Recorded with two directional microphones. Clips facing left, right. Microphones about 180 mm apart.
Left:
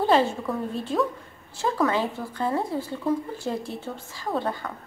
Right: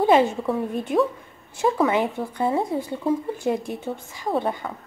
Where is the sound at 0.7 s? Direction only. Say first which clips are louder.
Right 4 dB; 20° right (ahead or behind).